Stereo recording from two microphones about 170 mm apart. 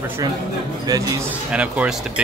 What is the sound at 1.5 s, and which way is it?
Speech, 5° right (ahead or behind).